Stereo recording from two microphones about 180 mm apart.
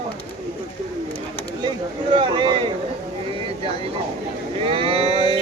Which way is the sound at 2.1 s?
25° right (ahead or behind).